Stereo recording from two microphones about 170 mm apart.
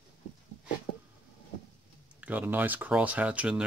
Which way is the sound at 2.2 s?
10° right (ahead or behind).